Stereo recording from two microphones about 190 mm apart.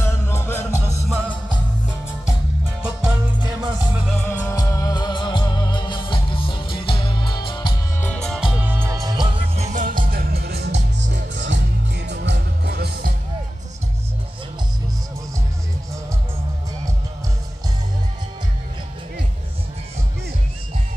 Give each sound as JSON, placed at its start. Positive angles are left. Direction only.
{"t": 0.0, "sound": "music", "side_deg": 15}
{"t": 1.0, "sound": "music", "side_deg": -5}
{"t": 2.8, "sound": "music", "side_deg": -5}
{"t": 4.2, "sound": "music", "side_deg": 10}
{"t": 8.0, "sound": "music", "side_deg": 5}
{"t": 9.6, "sound": "music", "side_deg": -40}